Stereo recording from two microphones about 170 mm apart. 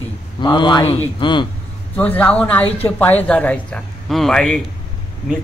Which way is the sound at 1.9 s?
10° left (ahead or behind).